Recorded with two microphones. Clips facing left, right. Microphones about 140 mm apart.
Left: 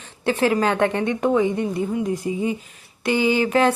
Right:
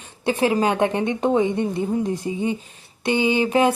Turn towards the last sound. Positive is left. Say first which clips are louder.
# even
turn(degrees=-20)  # may be behind; listen again after turning